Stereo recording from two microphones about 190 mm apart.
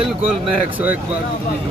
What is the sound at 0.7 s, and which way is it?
Speech, 10° right (ahead or behind).